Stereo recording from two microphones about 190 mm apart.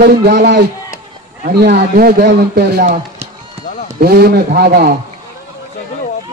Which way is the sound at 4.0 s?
55° right (ahead or behind).